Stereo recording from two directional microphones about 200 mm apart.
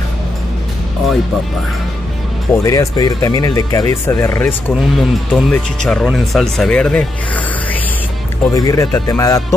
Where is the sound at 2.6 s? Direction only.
15° left (ahead or behind).